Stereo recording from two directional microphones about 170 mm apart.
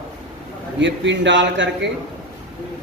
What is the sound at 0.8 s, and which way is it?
Speech, 90° right.